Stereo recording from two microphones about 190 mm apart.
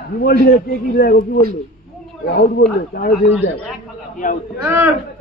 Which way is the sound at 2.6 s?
60° left (ahead or behind).